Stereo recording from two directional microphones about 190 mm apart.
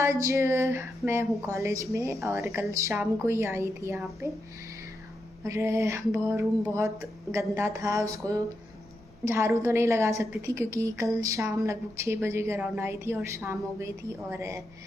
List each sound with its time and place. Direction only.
0.0 s a woman's voice: 15° right (ahead or behind)
5.4 s a woman's voice: 15° right (ahead or behind)